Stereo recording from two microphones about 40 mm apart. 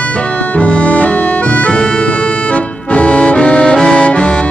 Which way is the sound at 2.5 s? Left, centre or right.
Left.